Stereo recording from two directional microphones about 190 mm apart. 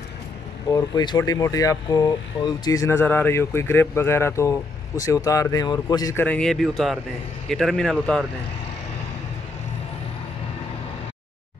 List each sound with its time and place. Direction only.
0.7 s speech: 20° left (ahead or behind)
6.2 s speech: 5° left (ahead or behind)